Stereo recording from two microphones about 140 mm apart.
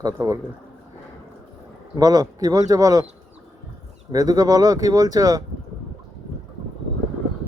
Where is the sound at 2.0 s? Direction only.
25° right (ahead or behind).